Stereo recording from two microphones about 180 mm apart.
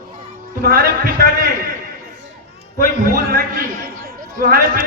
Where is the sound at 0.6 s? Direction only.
55° right (ahead or behind).